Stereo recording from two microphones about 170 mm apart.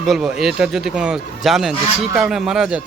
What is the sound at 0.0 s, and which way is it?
Speech, 5° right (ahead or behind).